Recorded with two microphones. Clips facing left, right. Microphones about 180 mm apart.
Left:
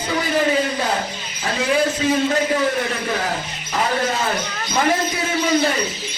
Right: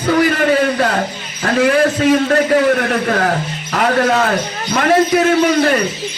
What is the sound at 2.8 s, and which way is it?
A man's voice, 70° right (ahead or behind).